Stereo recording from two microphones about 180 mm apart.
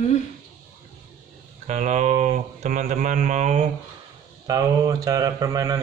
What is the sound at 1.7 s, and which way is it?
Speech, 40° right (ahead or behind).